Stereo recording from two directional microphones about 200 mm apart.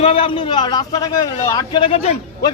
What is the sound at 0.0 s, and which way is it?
A man's voice, 30° left (ahead or behind).